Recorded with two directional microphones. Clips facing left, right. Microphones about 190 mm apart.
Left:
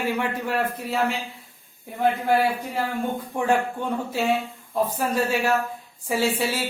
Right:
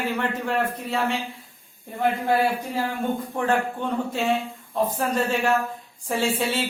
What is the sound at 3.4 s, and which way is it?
Speech, 10° left (ahead or behind).